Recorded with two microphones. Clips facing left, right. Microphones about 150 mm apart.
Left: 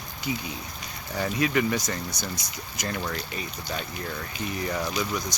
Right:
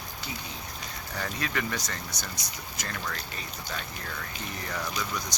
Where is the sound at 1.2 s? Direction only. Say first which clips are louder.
Left 8 dB; 15° left (ahead or behind).